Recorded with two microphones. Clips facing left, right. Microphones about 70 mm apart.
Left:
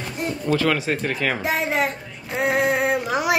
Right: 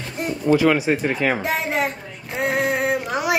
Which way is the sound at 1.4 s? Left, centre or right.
Centre.